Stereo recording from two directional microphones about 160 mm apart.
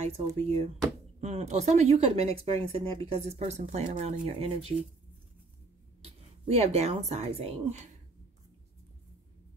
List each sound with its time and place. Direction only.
0.0 s speech: 40° right (ahead or behind)
6.0 s speech: 40° right (ahead or behind)